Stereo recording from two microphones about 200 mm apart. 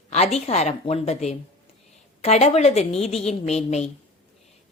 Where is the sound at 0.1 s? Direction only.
30° left (ahead or behind).